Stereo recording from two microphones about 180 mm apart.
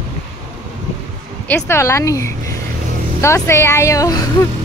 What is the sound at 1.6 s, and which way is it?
Speech, 15° left (ahead or behind).